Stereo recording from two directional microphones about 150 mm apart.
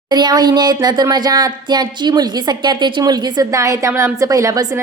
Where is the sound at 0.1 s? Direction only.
30° right (ahead or behind).